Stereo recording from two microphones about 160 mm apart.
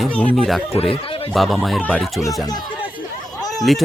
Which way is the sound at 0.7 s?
40° left (ahead or behind).